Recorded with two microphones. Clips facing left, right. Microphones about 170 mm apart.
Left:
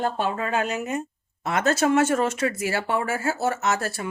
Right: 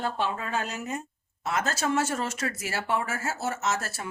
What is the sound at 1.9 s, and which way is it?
Speech, 55° left (ahead or behind).